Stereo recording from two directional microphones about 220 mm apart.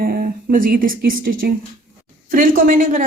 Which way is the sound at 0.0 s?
40° right (ahead or behind).